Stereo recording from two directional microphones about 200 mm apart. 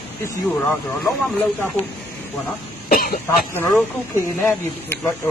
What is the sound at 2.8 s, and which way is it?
Cough, 45° left (ahead or behind).